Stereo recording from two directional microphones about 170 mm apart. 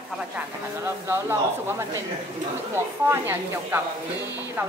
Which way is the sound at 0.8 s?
15° right (ahead or behind).